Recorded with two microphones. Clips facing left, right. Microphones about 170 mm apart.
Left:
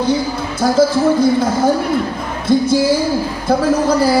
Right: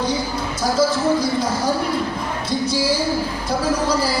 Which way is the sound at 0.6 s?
55° left (ahead or behind).